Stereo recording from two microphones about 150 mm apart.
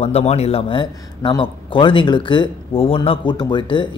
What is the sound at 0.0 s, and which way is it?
A man's voice, 45° left (ahead or behind).